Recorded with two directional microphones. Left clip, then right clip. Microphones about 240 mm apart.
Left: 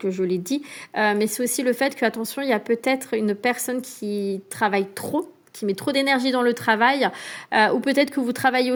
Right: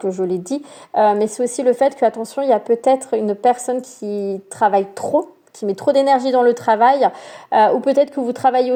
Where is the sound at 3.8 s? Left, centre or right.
Left.